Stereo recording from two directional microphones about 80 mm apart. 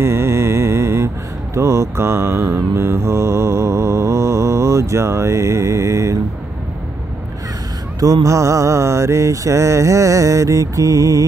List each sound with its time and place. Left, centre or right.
0.0 s mantra: right
8.0 s mantra: right